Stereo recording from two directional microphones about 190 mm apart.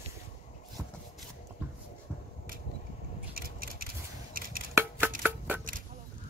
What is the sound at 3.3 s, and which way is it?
Scissors, 50° right (ahead or behind).